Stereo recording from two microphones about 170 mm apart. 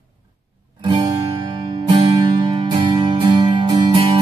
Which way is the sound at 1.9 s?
30° right (ahead or behind).